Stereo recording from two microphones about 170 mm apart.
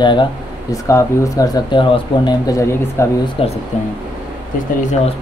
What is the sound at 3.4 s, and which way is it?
Speech, 35° left (ahead or behind).